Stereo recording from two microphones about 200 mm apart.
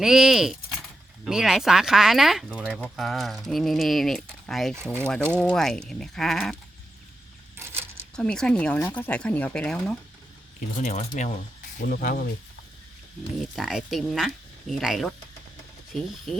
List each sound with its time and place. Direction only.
0.0 s speech: 5° right (ahead or behind)
4.8 s speech: 10° right (ahead or behind)
5.4 s speech: 5° left (ahead or behind)
7.5 s a sound: 10° right (ahead or behind)
8.1 s speech: 5° left (ahead or behind)
10.8 s speech: 35° left (ahead or behind)
13.6 s speech: centre (ahead or behind)